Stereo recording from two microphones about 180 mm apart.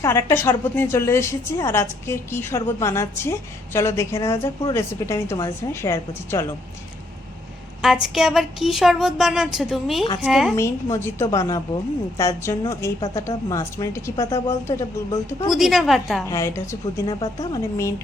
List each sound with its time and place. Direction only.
0.0 s a woman's voice: 15° left (ahead or behind)
8.0 s speech: centre (ahead or behind)
10.5 s a woman's voice: 15° left (ahead or behind)
15.4 s speech: centre (ahead or behind)
16.2 s a woman's voice: 15° left (ahead or behind)